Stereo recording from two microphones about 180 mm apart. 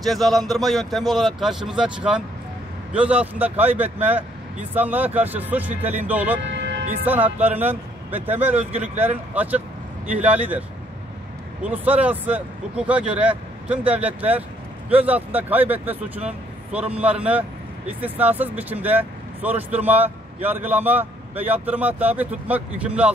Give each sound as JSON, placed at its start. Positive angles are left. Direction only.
{"t": 0.0, "sound": "speech", "side_deg": 0}
{"t": 6.4, "sound": "vehicle", "side_deg": -75}
{"t": 7.1, "sound": "speech", "side_deg": -10}
{"t": 11.6, "sound": "speech", "side_deg": -10}